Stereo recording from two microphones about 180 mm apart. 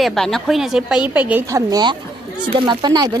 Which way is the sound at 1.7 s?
25° right (ahead or behind).